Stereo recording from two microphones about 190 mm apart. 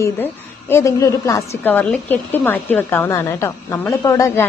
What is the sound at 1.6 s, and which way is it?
A woman's voice, 5° left (ahead or behind).